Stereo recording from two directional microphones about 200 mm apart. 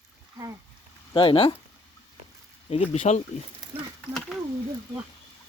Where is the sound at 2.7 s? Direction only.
30° left (ahead or behind).